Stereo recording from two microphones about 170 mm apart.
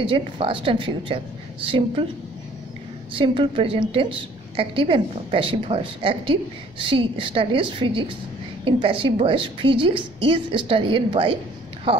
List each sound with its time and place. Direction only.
0.0 s a woman's voice: 30° right (ahead or behind)
3.2 s a woman's voice: 30° right (ahead or behind)